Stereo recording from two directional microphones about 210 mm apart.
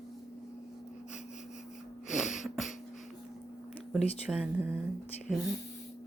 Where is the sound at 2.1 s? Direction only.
Centre (ahead or behind).